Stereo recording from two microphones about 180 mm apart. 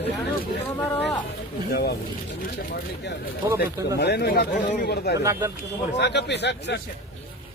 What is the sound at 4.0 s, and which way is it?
Speech, 65° left (ahead or behind).